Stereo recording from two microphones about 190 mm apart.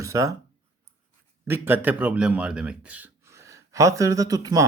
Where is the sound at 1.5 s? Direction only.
10° right (ahead or behind).